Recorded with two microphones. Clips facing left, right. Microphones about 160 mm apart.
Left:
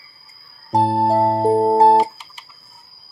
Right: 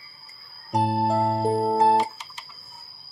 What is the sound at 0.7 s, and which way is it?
Music, 35° left (ahead or behind).